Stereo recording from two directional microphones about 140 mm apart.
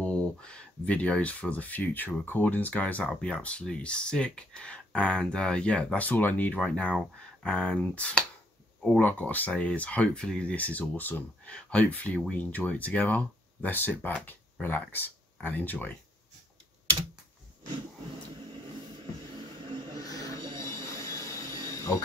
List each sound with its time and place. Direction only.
0.0 s speech: 10° left (ahead or behind)
20.0 s train: 25° left (ahead or behind)
20.5 s a sound: 20° left (ahead or behind)